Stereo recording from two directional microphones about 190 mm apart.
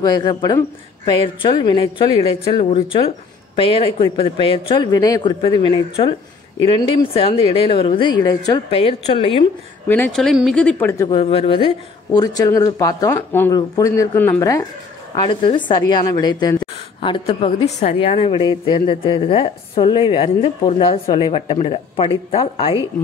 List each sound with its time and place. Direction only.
0.0 s a woman's voice: 20° left (ahead or behind)
8.6 s a woman's voice: 30° left (ahead or behind)
9.8 s speech: 10° left (ahead or behind)
11.1 s a woman's voice: 30° left (ahead or behind)